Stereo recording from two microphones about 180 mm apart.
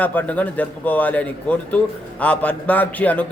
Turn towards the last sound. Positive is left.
turn(degrees=10)  # may be behind; listen again after turning